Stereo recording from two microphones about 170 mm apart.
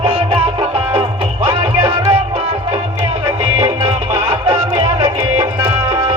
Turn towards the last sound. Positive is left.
turn(degrees=-20)  # may be behind; listen again after turning